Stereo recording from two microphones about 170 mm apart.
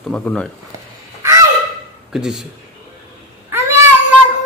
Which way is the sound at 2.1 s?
Centre (ahead or behind).